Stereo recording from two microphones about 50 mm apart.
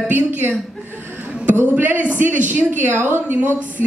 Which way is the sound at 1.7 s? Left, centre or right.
Right.